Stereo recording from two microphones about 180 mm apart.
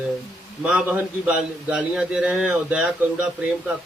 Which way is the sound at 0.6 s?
5° right (ahead or behind).